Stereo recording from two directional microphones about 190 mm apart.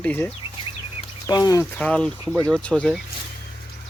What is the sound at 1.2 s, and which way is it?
Speech, 20° left (ahead or behind).